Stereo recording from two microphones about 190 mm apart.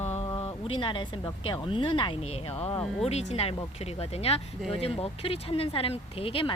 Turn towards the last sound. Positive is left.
turn(degrees=30)  # may be behind; listen again after turning